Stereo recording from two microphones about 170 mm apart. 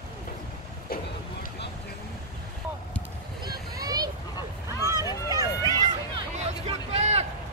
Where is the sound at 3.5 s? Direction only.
25° right (ahead or behind).